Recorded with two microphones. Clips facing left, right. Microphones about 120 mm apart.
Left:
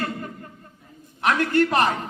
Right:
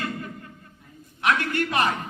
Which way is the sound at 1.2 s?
40° left (ahead or behind).